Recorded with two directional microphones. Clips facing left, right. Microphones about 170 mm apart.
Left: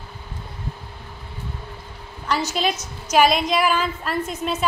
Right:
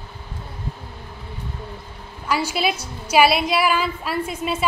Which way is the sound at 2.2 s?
10° right (ahead or behind).